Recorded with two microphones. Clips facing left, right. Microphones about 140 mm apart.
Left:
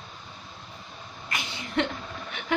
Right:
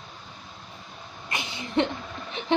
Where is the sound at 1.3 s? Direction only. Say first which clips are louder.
Right 1 dB; 25° right (ahead or behind).